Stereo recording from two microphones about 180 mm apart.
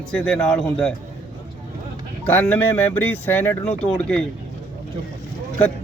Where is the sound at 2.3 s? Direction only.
10° left (ahead or behind).